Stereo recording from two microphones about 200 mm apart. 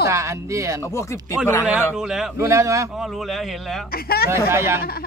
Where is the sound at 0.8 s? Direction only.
15° left (ahead or behind).